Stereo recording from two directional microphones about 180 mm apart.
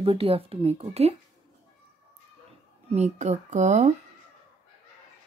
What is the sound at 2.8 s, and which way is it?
Speech, 40° right (ahead or behind).